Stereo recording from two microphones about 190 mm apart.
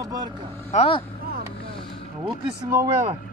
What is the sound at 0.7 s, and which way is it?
Speech, 30° left (ahead or behind).